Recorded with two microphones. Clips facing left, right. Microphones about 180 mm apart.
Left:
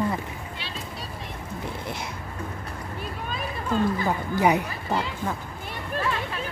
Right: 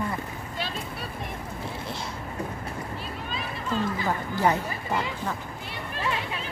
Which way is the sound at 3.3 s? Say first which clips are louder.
Left 3 dB; 50° left (ahead or behind).